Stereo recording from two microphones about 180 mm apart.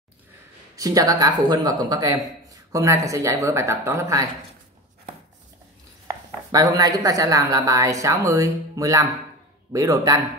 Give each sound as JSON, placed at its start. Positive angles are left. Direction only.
{"t": 0.7, "sound": "speech", "side_deg": -20}
{"t": 6.5, "sound": "speech", "side_deg": -20}